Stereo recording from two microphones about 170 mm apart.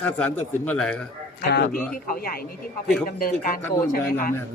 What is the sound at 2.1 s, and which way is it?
Speech, 60° left (ahead or behind).